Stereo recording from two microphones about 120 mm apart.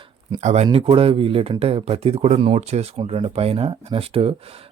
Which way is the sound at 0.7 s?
50° right (ahead or behind).